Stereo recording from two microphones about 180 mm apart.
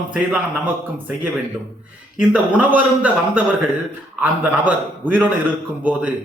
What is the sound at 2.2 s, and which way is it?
A man's voice, 10° right (ahead or behind).